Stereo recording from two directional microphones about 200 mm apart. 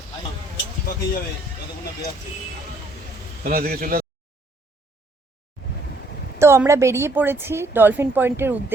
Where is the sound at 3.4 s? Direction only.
45° right (ahead or behind).